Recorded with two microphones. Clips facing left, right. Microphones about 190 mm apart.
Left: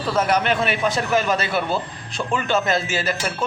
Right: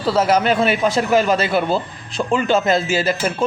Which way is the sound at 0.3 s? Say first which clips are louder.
Right 4 dB; 35° right (ahead or behind).